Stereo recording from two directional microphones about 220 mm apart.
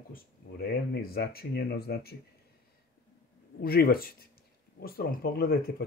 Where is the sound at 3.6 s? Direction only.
45° left (ahead or behind).